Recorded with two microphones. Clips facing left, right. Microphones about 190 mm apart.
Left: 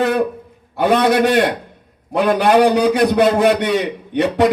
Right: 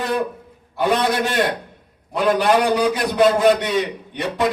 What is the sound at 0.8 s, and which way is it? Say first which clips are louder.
A man's voice: left 5 dB; 55° left (ahead or behind).